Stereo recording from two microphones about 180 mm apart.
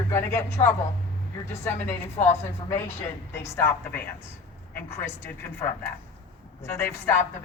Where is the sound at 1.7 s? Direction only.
40° left (ahead or behind).